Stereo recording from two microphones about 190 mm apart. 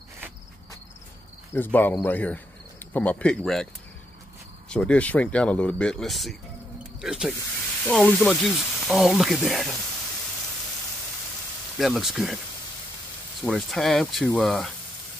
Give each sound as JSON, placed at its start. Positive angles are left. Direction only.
{"t": 1.5, "sound": "speech", "side_deg": 10}
{"t": 4.6, "sound": "speech", "side_deg": 5}
{"t": 11.8, "sound": "speech", "side_deg": 0}
{"t": 13.4, "sound": "speech", "side_deg": 0}